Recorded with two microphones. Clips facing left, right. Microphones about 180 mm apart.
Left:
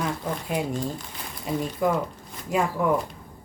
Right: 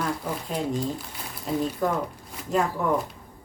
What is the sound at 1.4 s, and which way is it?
Speech, 10° left (ahead or behind).